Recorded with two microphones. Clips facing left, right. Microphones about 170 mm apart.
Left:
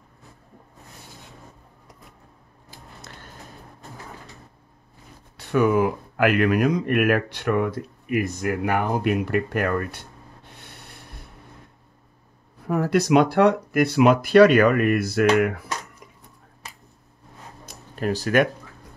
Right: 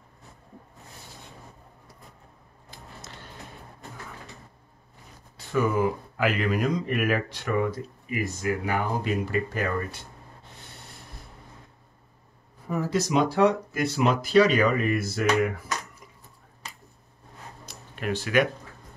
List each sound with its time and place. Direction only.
5.5 s speech: 65° left (ahead or behind)
12.6 s speech: 65° left (ahead or behind)
17.6 s a sound: 40° left (ahead or behind)